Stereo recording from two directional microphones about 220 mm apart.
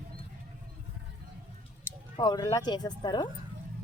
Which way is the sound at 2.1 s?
20° left (ahead or behind).